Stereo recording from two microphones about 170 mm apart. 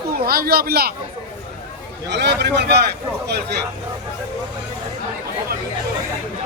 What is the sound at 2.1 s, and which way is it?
Speech, 85° right.